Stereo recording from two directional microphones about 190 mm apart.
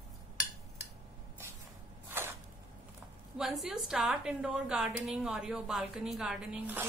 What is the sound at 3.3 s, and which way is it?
A woman's voice, centre (ahead or behind).